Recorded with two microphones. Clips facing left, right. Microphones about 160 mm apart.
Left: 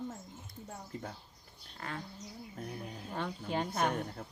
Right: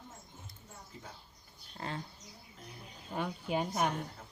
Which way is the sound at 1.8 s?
20° right (ahead or behind).